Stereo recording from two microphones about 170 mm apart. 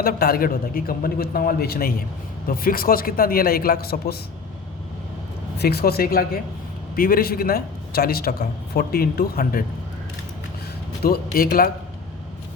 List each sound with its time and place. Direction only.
0.0 s a man's voice: 60° left (ahead or behind)
5.5 s a man's voice: 65° left (ahead or behind)
11.0 s a man's voice: 60° left (ahead or behind)